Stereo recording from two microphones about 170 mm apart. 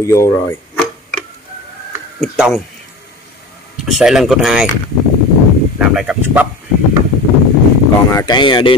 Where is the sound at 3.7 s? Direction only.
5° right (ahead or behind).